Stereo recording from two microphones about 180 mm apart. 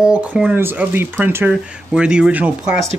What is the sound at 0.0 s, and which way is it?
Speech, 5° right (ahead or behind).